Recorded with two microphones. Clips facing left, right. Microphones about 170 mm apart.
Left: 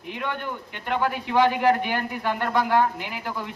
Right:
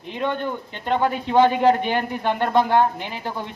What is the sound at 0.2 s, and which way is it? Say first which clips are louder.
Speech: right 7 dB; 30° right (ahead or behind).